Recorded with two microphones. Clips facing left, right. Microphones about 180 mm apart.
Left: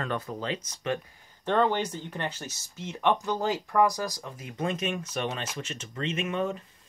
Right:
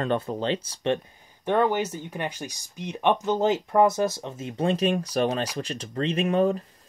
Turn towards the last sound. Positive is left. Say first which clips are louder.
# right 7 dB
turn(degrees=-35)  # may be behind; listen again after turning